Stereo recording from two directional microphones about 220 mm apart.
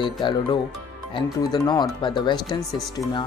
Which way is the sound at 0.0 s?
20° left (ahead or behind).